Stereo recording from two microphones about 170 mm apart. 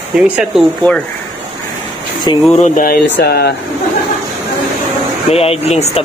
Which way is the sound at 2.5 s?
50° left (ahead or behind).